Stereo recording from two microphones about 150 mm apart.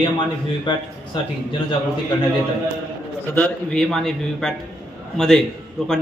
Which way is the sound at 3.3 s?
5° left (ahead or behind).